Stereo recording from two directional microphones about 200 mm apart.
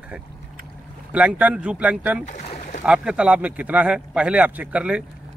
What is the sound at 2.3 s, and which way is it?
Boat, 35° left (ahead or behind).